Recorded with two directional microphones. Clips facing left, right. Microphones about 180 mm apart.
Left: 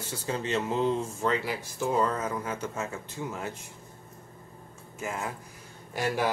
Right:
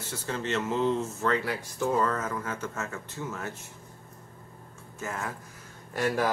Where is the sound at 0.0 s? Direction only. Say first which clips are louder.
Left 1 dB; 15° left (ahead or behind).